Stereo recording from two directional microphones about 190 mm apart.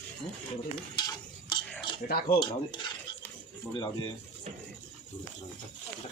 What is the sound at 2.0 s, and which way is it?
Speech, 55° left (ahead or behind).